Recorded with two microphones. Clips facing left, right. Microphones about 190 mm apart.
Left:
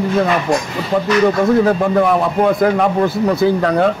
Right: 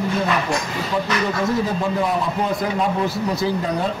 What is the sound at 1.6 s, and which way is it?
A man's voice, 65° left (ahead or behind).